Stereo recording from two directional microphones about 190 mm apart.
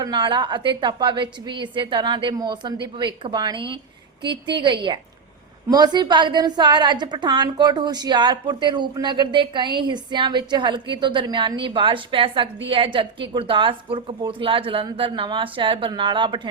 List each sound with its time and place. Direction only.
0.0 s a woman's voice: 25° right (ahead or behind)